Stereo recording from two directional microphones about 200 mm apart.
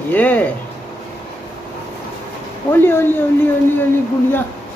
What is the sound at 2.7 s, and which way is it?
Speech, 10° left (ahead or behind).